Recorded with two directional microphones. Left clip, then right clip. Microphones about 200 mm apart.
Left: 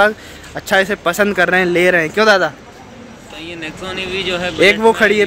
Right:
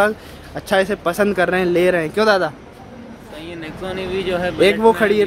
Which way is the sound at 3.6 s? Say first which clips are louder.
Left 2 dB; 20° right (ahead or behind).